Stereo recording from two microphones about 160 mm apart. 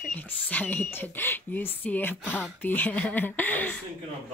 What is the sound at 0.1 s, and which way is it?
Speech, 10° left (ahead or behind).